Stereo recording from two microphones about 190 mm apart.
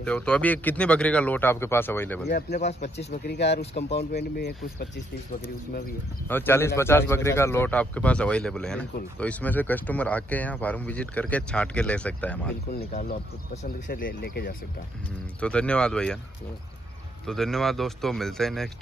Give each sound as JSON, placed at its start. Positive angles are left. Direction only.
{"t": 0.0, "sound": "speech", "side_deg": 5}
{"t": 2.2, "sound": "speech", "side_deg": 55}
{"t": 6.2, "sound": "speech", "side_deg": 10}
{"t": 13.8, "sound": "speech", "side_deg": 45}
{"t": 15.4, "sound": "speech", "side_deg": 5}
{"t": 17.3, "sound": "speech", "side_deg": 0}